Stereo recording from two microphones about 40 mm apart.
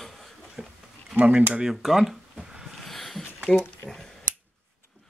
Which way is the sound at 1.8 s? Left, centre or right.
Centre.